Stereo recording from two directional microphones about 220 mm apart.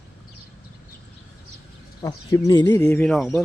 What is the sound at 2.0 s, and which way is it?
Speech, 15° left (ahead or behind).